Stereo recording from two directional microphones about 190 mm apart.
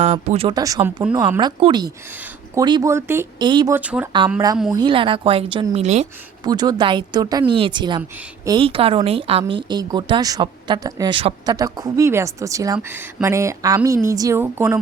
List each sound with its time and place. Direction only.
0.0 s speech: 30° right (ahead or behind)
0.5 s speech: 20° right (ahead or behind)
3.8 s a woman's voice: 5° right (ahead or behind)
4.7 s speech: 25° right (ahead or behind)
6.4 s a woman's voice: 20° right (ahead or behind)